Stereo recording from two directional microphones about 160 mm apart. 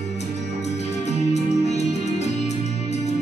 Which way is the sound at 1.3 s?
45° left (ahead or behind).